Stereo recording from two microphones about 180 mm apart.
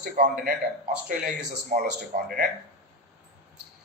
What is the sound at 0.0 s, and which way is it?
Speech, 50° right (ahead or behind).